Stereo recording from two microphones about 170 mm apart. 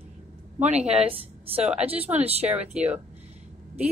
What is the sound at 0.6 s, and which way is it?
A woman's voice, 40° right (ahead or behind).